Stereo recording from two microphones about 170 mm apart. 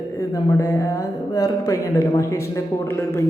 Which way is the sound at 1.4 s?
20° left (ahead or behind).